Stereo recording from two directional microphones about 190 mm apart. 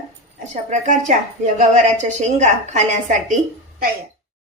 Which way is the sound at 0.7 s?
40° right (ahead or behind).